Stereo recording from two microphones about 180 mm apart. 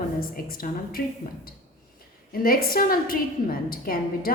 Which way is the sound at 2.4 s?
55° left (ahead or behind).